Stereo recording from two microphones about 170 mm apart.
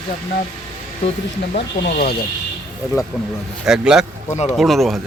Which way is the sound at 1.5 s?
60° left (ahead or behind).